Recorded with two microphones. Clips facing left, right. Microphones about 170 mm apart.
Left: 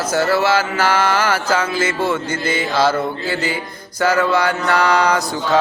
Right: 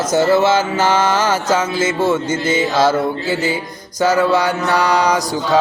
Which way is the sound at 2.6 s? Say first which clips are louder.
Right 1 dB; 15° right (ahead or behind).